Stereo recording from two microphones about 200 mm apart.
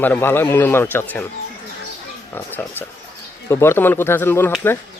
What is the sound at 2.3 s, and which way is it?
Speech, 10° left (ahead or behind).